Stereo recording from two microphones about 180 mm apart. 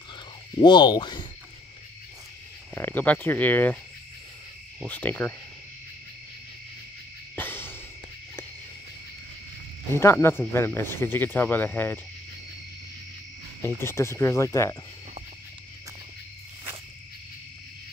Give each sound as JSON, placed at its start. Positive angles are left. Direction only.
{"t": 0.6, "sound": "speech", "side_deg": 25}
{"t": 2.7, "sound": "speech", "side_deg": 10}
{"t": 4.8, "sound": "speech", "side_deg": 10}
{"t": 7.3, "sound": "music", "side_deg": 10}
{"t": 9.9, "sound": "speech", "side_deg": 15}
{"t": 13.7, "sound": "speech", "side_deg": 15}